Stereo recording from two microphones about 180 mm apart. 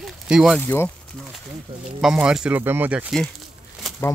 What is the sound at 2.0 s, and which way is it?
Speech, 5° right (ahead or behind).